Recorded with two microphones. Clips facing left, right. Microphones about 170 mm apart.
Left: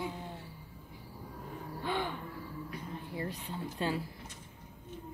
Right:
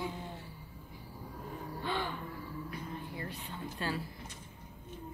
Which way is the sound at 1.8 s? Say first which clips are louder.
Left 2 dB; 15° left (ahead or behind).